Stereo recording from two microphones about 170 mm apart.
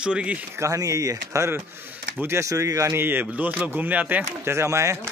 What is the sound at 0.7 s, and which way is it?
Speech, 20° right (ahead or behind).